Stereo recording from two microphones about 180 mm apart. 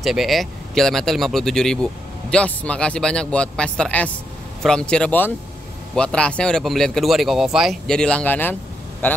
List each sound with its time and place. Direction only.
0.0 s a man's voice: centre (ahead or behind)